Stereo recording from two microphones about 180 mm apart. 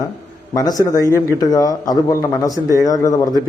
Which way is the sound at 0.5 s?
20° left (ahead or behind).